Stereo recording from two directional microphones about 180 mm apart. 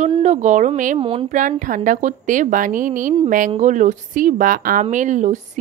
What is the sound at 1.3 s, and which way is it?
A woman's voice, 45° right (ahead or behind).